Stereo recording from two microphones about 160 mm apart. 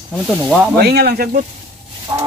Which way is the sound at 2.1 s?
30° right (ahead or behind).